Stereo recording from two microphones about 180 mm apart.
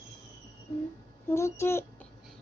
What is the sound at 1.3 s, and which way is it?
Speech, 15° left (ahead or behind).